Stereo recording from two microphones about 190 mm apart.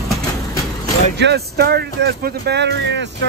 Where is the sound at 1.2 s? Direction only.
60° right (ahead or behind).